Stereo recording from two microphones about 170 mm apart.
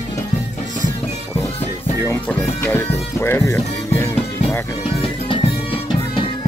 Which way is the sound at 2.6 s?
15° left (ahead or behind).